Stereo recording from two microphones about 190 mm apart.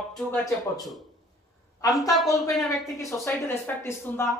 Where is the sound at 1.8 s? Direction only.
20° left (ahead or behind).